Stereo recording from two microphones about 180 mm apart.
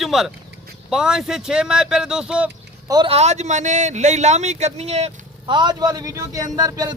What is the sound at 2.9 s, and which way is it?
A man's voice, 30° right (ahead or behind).